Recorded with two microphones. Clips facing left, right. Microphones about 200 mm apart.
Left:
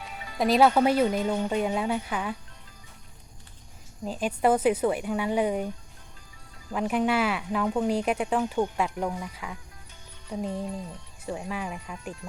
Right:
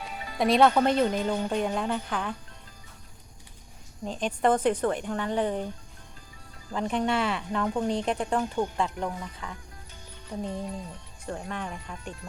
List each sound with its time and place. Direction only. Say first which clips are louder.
0.0 s music: right 2 dB; 35° right (ahead or behind)
0.3 s speech: even; centre (ahead or behind)
4.0 s speech: left 1 dB; 5° left (ahead or behind)
6.7 s speech: left 2 dB; 5° left (ahead or behind)